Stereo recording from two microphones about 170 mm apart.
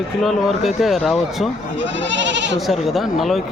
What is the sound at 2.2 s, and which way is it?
Speech, 90° right.